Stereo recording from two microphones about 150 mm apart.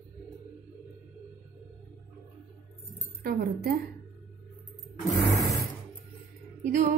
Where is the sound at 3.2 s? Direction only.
85° right.